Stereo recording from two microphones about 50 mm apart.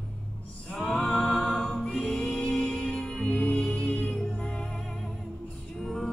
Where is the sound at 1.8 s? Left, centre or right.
Centre.